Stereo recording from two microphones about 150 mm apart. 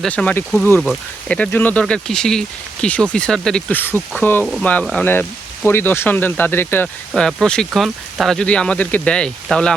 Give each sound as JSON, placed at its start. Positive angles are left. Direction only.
{"t": 0.0, "sound": "speech", "side_deg": 5}
{"t": 4.4, "sound": "speech", "side_deg": 0}
{"t": 6.8, "sound": "speech", "side_deg": 5}